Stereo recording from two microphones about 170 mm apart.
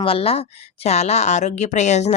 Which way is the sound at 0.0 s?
35° left (ahead or behind).